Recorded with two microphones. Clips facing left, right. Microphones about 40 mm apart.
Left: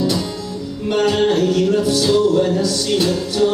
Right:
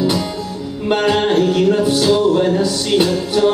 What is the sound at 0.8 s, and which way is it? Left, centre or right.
Music, right.